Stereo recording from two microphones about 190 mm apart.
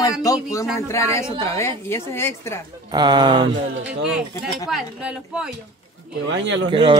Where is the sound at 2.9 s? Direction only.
20° right (ahead or behind).